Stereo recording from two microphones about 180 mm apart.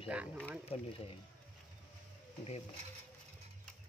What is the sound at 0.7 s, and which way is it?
Speech, 30° left (ahead or behind).